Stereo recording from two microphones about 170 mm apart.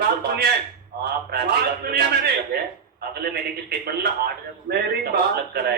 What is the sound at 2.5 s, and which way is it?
A man's voice, 70° right (ahead or behind).